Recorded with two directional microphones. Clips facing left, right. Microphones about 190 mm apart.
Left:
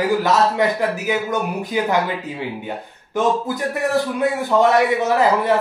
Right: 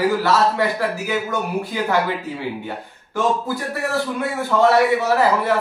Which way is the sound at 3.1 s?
20° left (ahead or behind).